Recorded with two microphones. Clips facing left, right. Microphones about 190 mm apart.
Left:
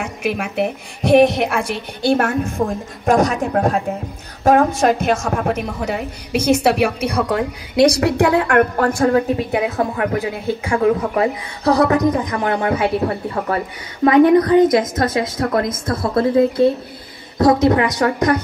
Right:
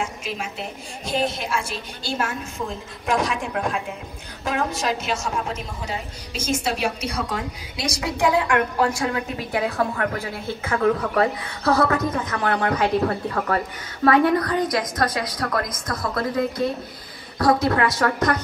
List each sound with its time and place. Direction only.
0.0 s speech: 65° left (ahead or behind)
9.5 s speech: 20° left (ahead or behind)
14.0 s a woman's voice: 20° left (ahead or behind)